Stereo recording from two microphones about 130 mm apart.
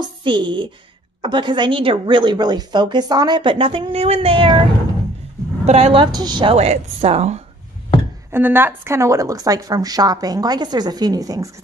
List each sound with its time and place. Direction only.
0.0 s a woman's voice: 35° right (ahead or behind)
5.7 s a woman's voice: 50° right (ahead or behind)
6.1 s a woman's voice: 35° right (ahead or behind)
6.5 s a woman's voice: 50° right (ahead or behind)
8.3 s a woman's voice: 15° right (ahead or behind)